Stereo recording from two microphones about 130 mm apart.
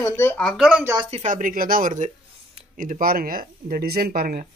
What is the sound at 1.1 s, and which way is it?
Speech, 75° right (ahead or behind).